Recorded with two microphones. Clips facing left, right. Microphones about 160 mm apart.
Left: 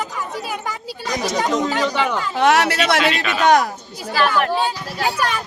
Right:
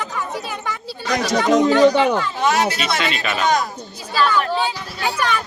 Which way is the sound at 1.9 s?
40° right (ahead or behind).